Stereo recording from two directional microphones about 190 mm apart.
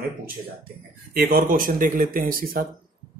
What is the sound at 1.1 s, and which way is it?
A man's voice, 50° right (ahead or behind).